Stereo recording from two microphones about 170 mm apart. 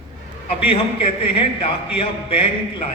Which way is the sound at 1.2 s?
30° left (ahead or behind).